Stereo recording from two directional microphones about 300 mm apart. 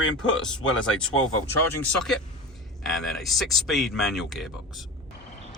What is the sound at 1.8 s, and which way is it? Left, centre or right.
Speech, centre.